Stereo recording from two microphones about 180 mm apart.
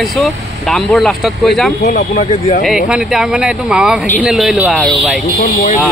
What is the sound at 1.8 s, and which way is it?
Speech, 45° left (ahead or behind).